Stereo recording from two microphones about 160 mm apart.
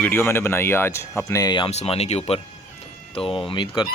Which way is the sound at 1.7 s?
40° left (ahead or behind).